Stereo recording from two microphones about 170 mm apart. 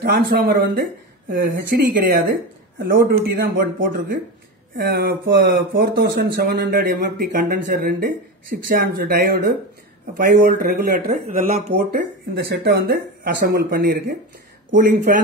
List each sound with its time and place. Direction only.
0.0 s speech: 65° right (ahead or behind)
2.8 s speech: 65° right (ahead or behind)
11.7 s speech: 75° right (ahead or behind); by 15.1 s 55° right (ahead or behind)